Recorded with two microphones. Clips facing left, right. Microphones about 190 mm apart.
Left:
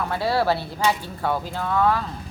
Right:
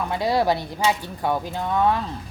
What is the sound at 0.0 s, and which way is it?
Speech, 15° right (ahead or behind).